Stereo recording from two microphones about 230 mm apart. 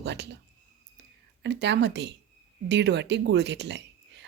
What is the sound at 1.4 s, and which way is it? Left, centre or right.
Speech, right.